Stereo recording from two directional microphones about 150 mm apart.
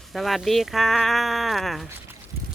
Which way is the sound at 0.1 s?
Centre (ahead or behind).